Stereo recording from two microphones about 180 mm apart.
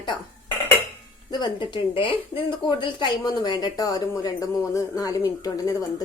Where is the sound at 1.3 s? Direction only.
25° left (ahead or behind).